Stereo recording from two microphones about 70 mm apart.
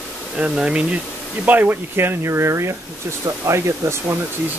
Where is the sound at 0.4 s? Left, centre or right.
Centre.